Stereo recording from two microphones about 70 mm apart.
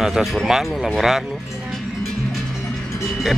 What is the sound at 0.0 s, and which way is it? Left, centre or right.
Speech, centre.